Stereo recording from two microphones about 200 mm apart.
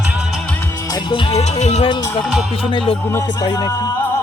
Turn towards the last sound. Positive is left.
turn(degrees=15)  # may be behind; listen again after turning